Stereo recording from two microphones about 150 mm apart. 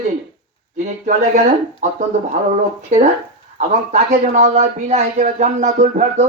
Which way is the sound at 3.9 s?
50° right (ahead or behind).